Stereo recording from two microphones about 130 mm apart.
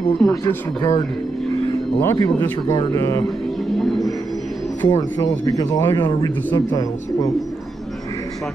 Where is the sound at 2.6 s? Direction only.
30° left (ahead or behind).